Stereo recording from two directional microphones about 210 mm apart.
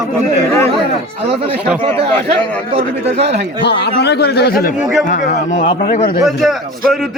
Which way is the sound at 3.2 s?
55° right (ahead or behind).